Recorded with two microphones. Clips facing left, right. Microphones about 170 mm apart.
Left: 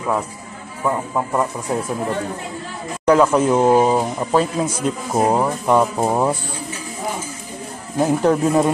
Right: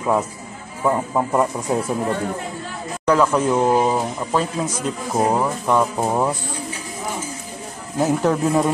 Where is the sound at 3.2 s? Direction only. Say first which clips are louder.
Left 2 dB; 10° left (ahead or behind).